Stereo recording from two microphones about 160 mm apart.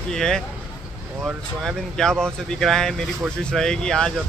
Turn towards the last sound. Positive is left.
turn(degrees=5)  # may be behind; listen again after turning